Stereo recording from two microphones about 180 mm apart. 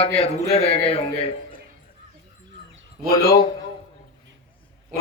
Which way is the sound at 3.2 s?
20° left (ahead or behind).